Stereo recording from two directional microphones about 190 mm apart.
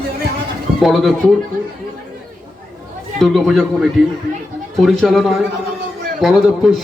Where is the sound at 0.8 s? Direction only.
Centre (ahead or behind).